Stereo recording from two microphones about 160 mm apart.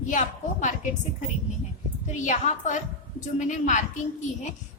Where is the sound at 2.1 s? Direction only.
50° left (ahead or behind).